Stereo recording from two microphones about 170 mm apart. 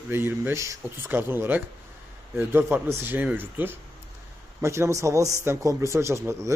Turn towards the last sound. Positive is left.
turn(degrees=-15)  # may be behind; listen again after turning